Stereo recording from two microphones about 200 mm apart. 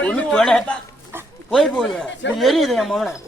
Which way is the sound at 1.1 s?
10° right (ahead or behind).